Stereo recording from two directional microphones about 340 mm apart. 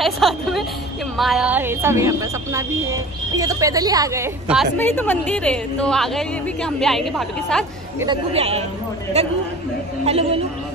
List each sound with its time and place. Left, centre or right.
0.0 s a woman's voice: centre
8.1 s a man's voice: centre